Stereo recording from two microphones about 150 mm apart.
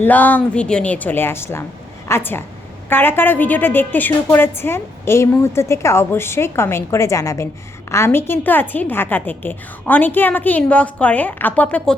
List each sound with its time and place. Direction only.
0.0 s a woman's voice: 10° left (ahead or behind)